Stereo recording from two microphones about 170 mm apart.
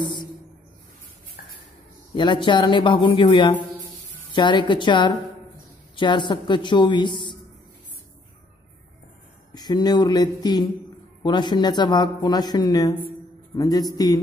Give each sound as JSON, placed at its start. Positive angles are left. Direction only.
{"t": 2.1, "sound": "speech", "side_deg": 25}
{"t": 9.5, "sound": "speech", "side_deg": 25}